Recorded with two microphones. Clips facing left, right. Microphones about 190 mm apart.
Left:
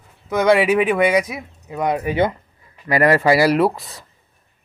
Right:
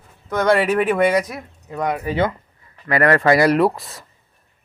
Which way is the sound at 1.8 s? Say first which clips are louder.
Left 2 dB; 20° left (ahead or behind).